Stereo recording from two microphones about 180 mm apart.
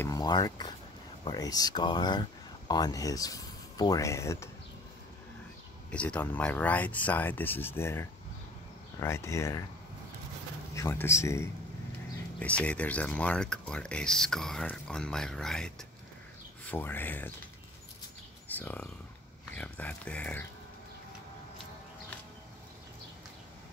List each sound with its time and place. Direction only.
0.0 s speech: 20° left (ahead or behind)
5.9 s speech: 5° left (ahead or behind)
10.7 s speech: 15° left (ahead or behind)
18.5 s speech: 10° left (ahead or behind)